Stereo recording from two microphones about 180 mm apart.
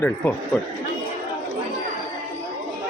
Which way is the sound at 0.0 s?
10° left (ahead or behind).